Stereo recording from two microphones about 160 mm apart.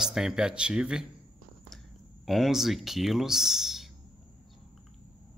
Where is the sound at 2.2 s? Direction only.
Centre (ahead or behind).